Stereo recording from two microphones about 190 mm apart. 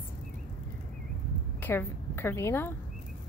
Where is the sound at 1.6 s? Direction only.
10° left (ahead or behind).